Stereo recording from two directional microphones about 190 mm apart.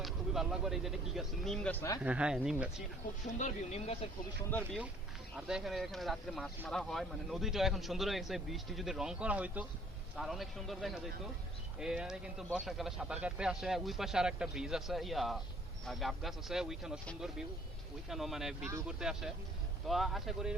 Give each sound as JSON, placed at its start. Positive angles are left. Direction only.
{"t": 0.0, "sound": "a man's voice", "side_deg": 0}
{"t": 2.0, "sound": "a man's voice", "side_deg": -5}
{"t": 3.3, "sound": "speech", "side_deg": 35}
{"t": 5.4, "sound": "a man's voice", "side_deg": -5}